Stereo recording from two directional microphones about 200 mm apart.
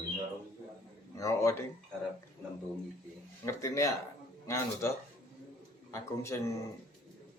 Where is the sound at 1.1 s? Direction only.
15° left (ahead or behind).